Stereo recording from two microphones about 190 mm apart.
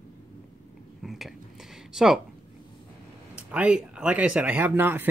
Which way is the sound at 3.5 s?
5° right (ahead or behind).